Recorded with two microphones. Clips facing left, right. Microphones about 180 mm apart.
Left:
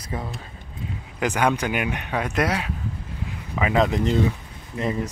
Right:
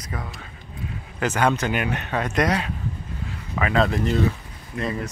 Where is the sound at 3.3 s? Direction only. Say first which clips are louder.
Left 1 dB; 15° left (ahead or behind).